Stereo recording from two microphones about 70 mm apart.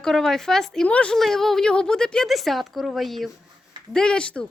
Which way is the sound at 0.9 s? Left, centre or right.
Centre.